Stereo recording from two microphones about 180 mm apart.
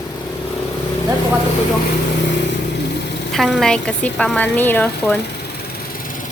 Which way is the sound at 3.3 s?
Centre (ahead or behind).